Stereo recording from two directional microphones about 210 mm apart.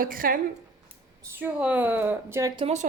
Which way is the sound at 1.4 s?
5° right (ahead or behind).